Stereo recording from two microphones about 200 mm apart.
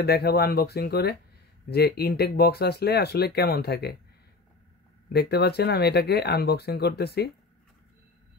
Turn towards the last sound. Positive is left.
turn(degrees=55)  # may be behind; listen again after turning